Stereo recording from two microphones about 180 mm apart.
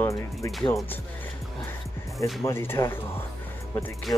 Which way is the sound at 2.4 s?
15° left (ahead or behind).